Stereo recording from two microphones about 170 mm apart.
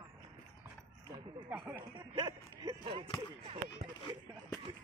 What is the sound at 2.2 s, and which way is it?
Speech, 25° right (ahead or behind).